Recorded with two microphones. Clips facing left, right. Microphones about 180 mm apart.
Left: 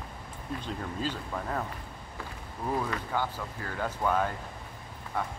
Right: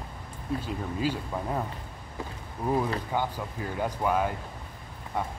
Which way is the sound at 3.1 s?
15° right (ahead or behind).